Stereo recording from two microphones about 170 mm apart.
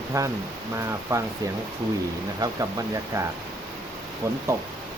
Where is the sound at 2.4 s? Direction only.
20° right (ahead or behind).